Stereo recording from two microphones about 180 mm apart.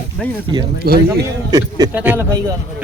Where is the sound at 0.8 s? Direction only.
60° right (ahead or behind).